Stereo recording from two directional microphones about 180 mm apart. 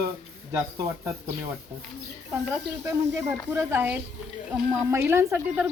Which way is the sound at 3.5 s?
15° right (ahead or behind).